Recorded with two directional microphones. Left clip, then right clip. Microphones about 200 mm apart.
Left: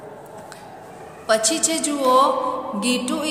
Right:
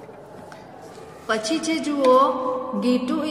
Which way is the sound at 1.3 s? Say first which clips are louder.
Left 4 dB; 15° right (ahead or behind).